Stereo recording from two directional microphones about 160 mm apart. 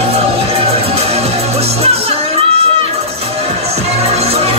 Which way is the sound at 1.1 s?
40° right (ahead or behind).